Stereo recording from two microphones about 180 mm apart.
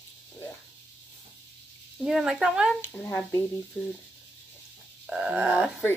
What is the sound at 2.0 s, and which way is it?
Speech, centre (ahead or behind).